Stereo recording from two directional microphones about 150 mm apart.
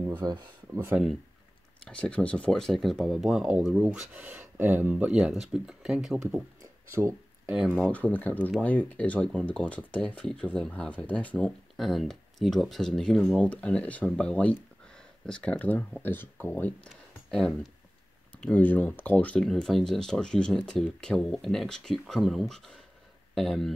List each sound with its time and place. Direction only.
0.2 s speech: 30° right (ahead or behind)
0.7 s speech: 10° right (ahead or behind)
1.9 s speech: 5° left (ahead or behind)
6.9 s speech: 20° right (ahead or behind)
7.4 s speech: 5° right (ahead or behind)
7.8 s speech: 10° left (ahead or behind)
16.9 s a sound: centre (ahead or behind)
18.3 s speech: 10° left (ahead or behind)